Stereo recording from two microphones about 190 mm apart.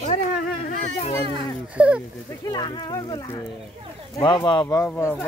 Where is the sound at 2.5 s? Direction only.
20° left (ahead or behind).